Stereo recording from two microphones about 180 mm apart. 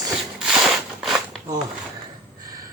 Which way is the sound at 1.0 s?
Centre (ahead or behind).